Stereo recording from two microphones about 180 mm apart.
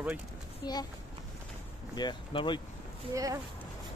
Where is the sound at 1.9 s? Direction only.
25° left (ahead or behind).